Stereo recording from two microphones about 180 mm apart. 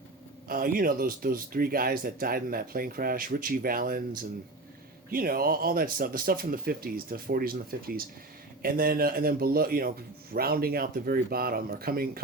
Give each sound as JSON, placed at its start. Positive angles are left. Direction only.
{"t": 0.4, "sound": "speech", "side_deg": -50}